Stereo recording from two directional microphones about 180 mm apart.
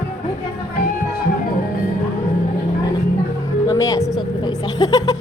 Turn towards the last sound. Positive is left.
turn(degrees=20)  # may be behind; listen again after turning